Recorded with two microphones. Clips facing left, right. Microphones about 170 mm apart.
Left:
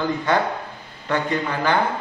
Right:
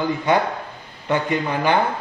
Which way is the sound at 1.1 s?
15° right (ahead or behind).